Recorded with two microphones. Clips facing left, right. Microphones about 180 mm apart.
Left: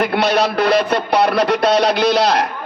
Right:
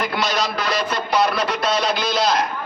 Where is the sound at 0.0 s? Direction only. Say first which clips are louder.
Left 7 dB; 60° left (ahead or behind).